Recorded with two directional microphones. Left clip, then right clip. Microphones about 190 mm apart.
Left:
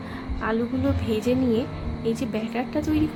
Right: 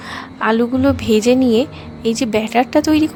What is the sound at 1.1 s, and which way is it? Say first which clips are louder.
A woman's voice: right 10 dB; 60° right (ahead or behind).